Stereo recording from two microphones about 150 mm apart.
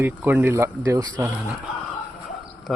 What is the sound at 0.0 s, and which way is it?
Speech, 10° right (ahead or behind).